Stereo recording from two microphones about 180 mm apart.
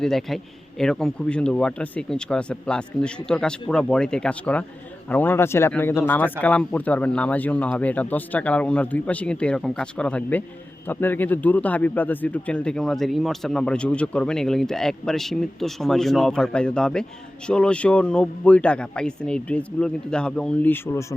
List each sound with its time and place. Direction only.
0.0 s speech: centre (ahead or behind)